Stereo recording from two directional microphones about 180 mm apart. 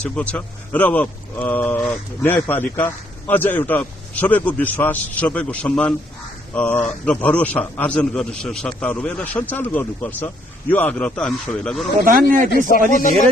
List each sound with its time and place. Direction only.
0.0 s speech: 5° left (ahead or behind)
12.0 s speech: 50° right (ahead or behind)
12.4 s a man's voice: 50° left (ahead or behind)